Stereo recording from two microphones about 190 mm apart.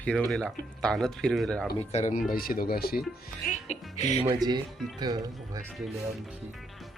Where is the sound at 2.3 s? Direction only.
50° left (ahead or behind).